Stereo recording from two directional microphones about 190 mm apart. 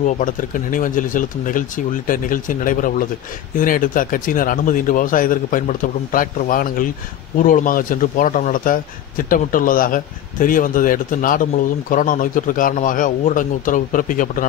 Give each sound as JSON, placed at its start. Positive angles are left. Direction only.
{"t": 0.0, "sound": "speech", "side_deg": 45}